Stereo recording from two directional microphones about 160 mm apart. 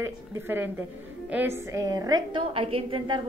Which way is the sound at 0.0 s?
15° right (ahead or behind).